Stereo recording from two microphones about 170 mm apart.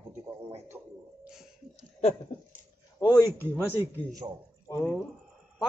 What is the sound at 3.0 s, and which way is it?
Speech, 25° left (ahead or behind).